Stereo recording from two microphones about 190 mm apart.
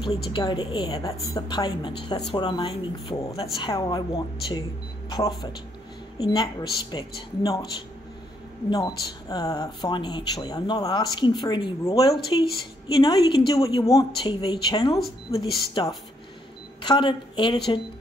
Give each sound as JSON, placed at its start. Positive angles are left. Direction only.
{"t": 0.3, "sound": "speech", "side_deg": 25}
{"t": 8.6, "sound": "a woman's voice", "side_deg": 20}